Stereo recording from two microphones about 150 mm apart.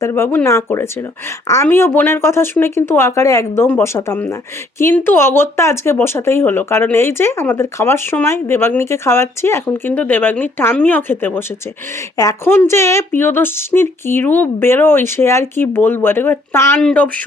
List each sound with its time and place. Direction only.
0.0 s speech: 15° left (ahead or behind)